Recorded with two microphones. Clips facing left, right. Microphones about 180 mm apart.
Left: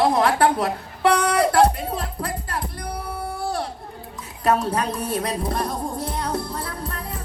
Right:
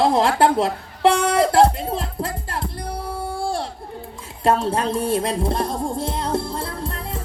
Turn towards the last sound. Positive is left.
turn(degrees=-25)  # may be behind; listen again after turning